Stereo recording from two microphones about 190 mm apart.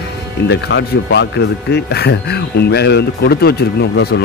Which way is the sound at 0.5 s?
65° left (ahead or behind).